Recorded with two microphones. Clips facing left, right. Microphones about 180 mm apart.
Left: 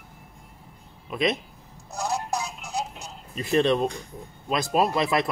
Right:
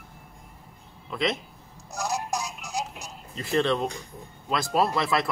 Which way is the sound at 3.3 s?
20° left (ahead or behind).